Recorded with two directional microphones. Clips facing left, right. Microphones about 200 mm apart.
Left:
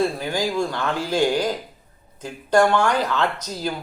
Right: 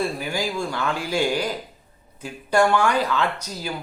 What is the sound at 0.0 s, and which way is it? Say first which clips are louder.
Speech: left 3 dB; 10° right (ahead or behind).